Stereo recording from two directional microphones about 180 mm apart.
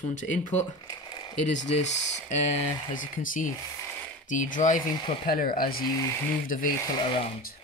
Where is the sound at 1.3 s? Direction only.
40° left (ahead or behind).